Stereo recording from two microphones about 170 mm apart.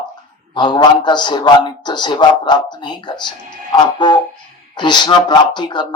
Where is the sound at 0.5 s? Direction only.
25° left (ahead or behind).